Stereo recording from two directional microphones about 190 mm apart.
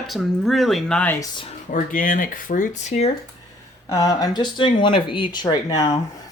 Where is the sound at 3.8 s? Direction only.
15° left (ahead or behind).